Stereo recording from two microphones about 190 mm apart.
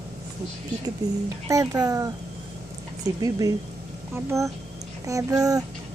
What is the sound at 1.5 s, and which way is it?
Speech, 15° right (ahead or behind).